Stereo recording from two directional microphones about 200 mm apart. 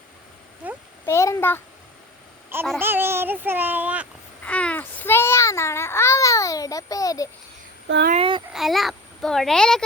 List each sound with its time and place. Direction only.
0.6 s a sound: 10° right (ahead or behind)
1.0 s a child's voice: 15° left (ahead or behind)
2.7 s child singing: 10° right (ahead or behind)
4.4 s babbling: 5° left (ahead or behind)
7.9 s speech: 60° right (ahead or behind)
8.1 s speech: 25° right (ahead or behind)
8.5 s a child's voice: centre (ahead or behind)